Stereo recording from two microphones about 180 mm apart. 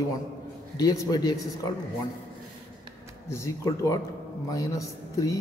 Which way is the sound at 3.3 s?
15° left (ahead or behind).